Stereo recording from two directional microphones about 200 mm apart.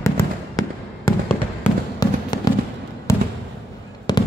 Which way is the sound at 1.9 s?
20° left (ahead or behind).